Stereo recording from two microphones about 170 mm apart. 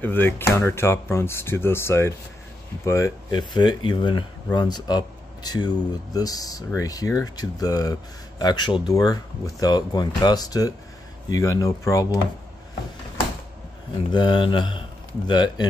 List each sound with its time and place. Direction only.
0.0 s speech: 10° left (ahead or behind)
14.1 s speech: 25° left (ahead or behind)